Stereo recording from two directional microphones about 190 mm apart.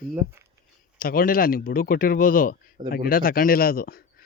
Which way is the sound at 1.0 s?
50° left (ahead or behind).